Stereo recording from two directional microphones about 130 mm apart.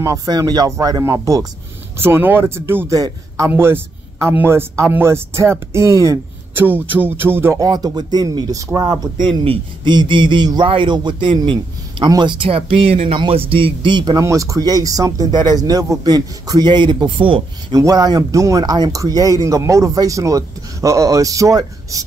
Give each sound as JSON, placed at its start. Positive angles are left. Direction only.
{"t": 0.0, "sound": "speech", "side_deg": -25}
{"t": 2.0, "sound": "a sound", "side_deg": -15}
{"t": 3.0, "sound": "speech", "side_deg": -20}
{"t": 6.5, "sound": "a sound", "side_deg": -15}
{"t": 7.6, "sound": "speech", "side_deg": -30}
{"t": 9.2, "sound": "speech", "side_deg": -45}
{"t": 17.7, "sound": "speech", "side_deg": -30}